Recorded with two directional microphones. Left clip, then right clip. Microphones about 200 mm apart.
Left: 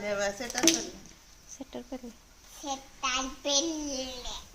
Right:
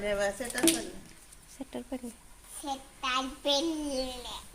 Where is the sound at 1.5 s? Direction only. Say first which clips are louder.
Right 1 dB; 5° right (ahead or behind).